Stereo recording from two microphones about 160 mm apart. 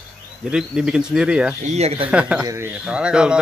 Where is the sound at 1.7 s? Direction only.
40° right (ahead or behind).